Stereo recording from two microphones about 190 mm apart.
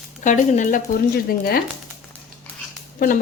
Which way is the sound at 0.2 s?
40° left (ahead or behind).